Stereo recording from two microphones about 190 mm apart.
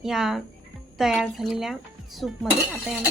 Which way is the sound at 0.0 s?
Centre (ahead or behind).